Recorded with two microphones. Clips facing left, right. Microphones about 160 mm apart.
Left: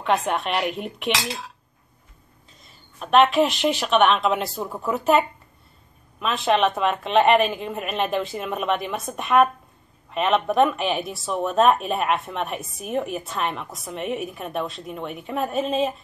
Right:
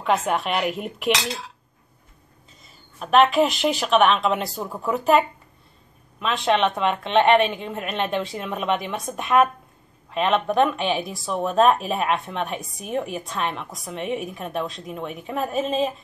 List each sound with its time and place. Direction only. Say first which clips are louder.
0.0 s a woman's voice: right 1 dB; centre (ahead or behind)
2.6 s a woman's voice: right 1 dB; centre (ahead or behind)